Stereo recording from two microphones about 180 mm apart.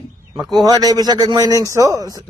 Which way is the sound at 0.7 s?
20° right (ahead or behind).